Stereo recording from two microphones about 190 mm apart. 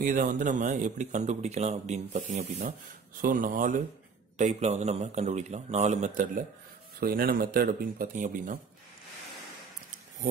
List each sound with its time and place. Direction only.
0.0 s speech: 45° right (ahead or behind)